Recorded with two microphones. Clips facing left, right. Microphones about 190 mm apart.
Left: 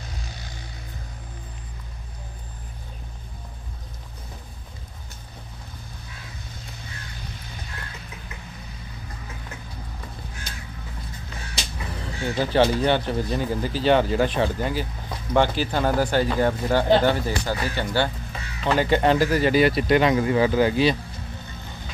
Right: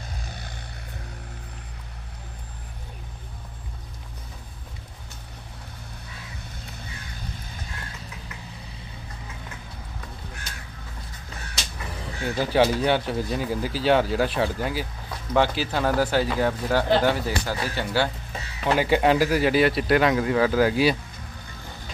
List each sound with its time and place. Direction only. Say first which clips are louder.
0.2 s music: right 1 dB; 55° right (ahead or behind)
12.4 s speech: left 1 dB; 10° right (ahead or behind)